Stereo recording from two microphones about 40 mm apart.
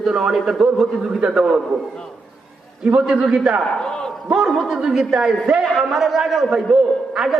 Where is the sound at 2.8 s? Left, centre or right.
Right.